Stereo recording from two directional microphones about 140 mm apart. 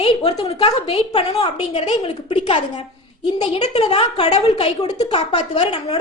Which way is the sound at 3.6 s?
45° left (ahead or behind).